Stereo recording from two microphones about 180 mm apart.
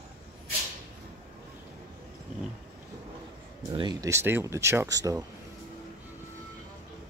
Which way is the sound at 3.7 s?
20° right (ahead or behind).